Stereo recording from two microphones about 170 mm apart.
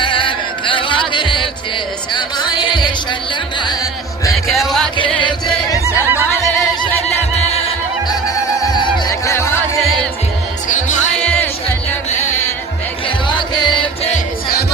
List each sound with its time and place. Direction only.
0.0 s music: 30° left (ahead or behind)
4.9 s music: 30° left (ahead or behind)
5.8 s a sound: 10° right (ahead or behind)
8.6 s music: 25° left (ahead or behind)
10.7 s music: 50° left (ahead or behind)
11.2 s music: 5° left (ahead or behind)
12.1 s music: 45° left (ahead or behind)
13.2 s music: 25° left (ahead or behind)